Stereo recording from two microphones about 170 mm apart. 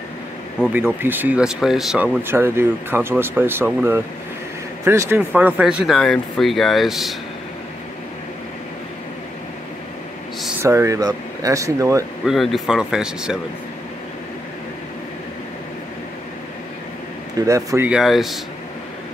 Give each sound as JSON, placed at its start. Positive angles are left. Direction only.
{"t": 0.7, "sound": "speech", "side_deg": -10}
{"t": 2.2, "sound": "speech", "side_deg": -15}
{"t": 10.6, "sound": "speech", "side_deg": -15}
{"t": 12.3, "sound": "speech", "side_deg": 0}
{"t": 17.4, "sound": "speech", "side_deg": -20}
{"t": 17.8, "sound": "speech", "side_deg": -5}